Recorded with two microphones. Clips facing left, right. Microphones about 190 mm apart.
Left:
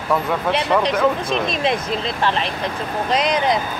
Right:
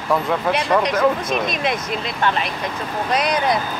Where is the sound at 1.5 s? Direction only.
30° left (ahead or behind).